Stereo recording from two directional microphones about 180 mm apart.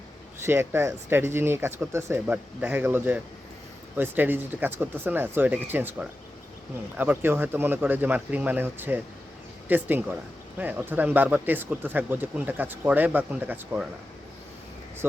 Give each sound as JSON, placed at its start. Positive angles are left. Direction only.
{"t": 0.3, "sound": "speech", "side_deg": -15}